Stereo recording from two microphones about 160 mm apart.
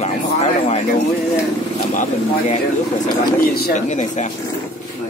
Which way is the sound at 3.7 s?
45° left (ahead or behind).